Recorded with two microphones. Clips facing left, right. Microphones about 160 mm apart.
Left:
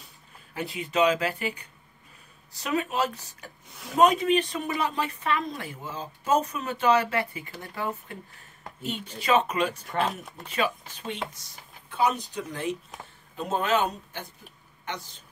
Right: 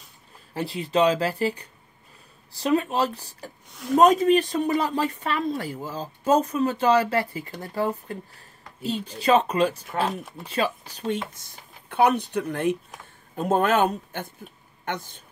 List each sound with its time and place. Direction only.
0.6 s speech: 35° right (ahead or behind)
3.6 s speech: centre (ahead or behind)
4.0 s speech: 40° right (ahead or behind)
9.8 s speech: 5° right (ahead or behind)
10.4 s speech: 30° right (ahead or behind)
11.3 s a man's voice: 60° right (ahead or behind)